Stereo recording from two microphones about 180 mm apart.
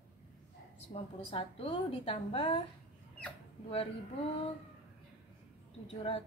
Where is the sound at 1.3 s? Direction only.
30° left (ahead or behind).